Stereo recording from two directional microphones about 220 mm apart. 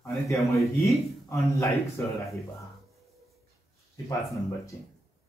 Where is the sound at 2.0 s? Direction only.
10° left (ahead or behind).